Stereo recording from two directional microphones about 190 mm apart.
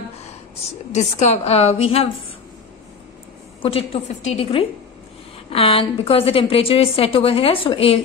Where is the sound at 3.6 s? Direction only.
30° left (ahead or behind).